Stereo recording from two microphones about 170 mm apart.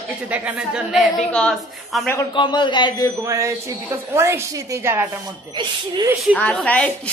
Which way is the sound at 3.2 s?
15° right (ahead or behind).